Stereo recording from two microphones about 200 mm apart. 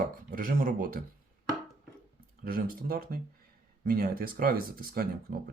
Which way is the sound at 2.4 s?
45° right (ahead or behind).